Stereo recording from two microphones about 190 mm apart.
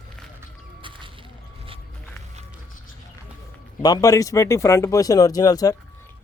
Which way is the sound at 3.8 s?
20° left (ahead or behind).